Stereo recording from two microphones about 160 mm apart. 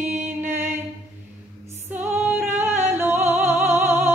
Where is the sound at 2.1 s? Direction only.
10° right (ahead or behind).